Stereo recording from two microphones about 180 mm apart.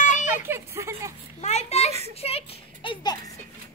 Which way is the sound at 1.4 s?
40° left (ahead or behind).